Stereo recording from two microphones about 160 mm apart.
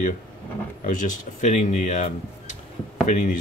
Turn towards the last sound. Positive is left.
turn(degrees=50)  # may be behind; listen again after turning